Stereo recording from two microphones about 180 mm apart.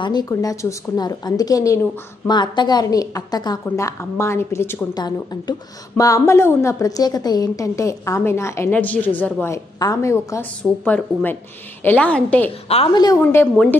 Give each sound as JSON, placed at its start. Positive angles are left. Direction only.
{"t": 0.0, "sound": "a woman's voice", "side_deg": 20}
{"t": 12.6, "sound": "a woman's voice", "side_deg": 30}
{"t": 13.2, "sound": "a woman's voice", "side_deg": 10}